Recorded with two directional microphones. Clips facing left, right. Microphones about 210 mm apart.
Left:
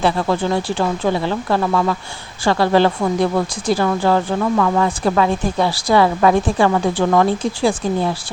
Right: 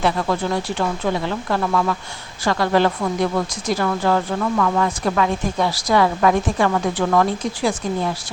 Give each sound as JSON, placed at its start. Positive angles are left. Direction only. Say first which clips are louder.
{"t": 0.0, "sound": "a woman's voice", "louder": "left 3 dB", "side_deg": 30}